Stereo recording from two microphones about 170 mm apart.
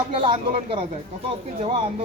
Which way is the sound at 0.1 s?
30° right (ahead or behind).